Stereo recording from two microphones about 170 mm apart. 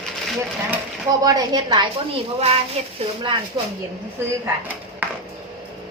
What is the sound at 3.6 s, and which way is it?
Speech, 25° right (ahead or behind).